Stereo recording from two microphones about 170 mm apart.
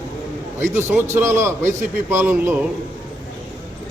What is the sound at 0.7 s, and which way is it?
A man's voice, 15° right (ahead or behind).